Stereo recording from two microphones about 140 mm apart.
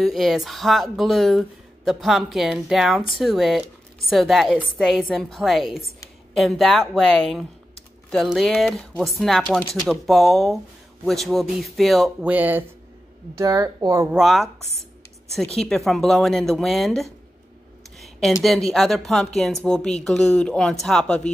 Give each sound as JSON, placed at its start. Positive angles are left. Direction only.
{"t": 0.0, "sound": "speech", "side_deg": 0}
{"t": 12.3, "sound": "a woman's voice", "side_deg": -10}
{"t": 14.1, "sound": "speech", "side_deg": 0}